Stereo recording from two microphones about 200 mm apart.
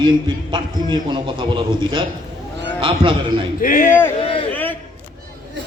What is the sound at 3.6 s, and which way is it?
Speech, 45° left (ahead or behind).